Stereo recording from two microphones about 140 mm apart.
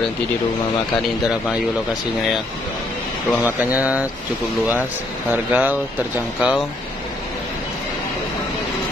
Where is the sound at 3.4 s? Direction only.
10° right (ahead or behind).